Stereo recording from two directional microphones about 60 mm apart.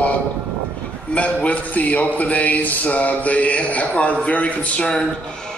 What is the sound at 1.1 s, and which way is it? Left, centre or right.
Speech, left.